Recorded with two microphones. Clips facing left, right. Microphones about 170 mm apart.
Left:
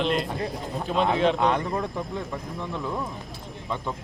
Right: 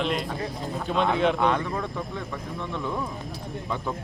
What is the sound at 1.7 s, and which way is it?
Speech, 20° left (ahead or behind).